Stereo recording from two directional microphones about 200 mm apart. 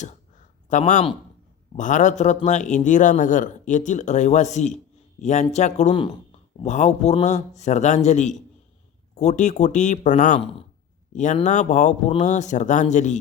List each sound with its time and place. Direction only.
0.7 s a man's voice: 40° left (ahead or behind)